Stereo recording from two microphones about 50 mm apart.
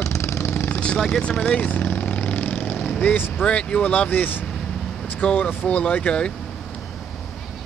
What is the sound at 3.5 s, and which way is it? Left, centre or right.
Speech, left.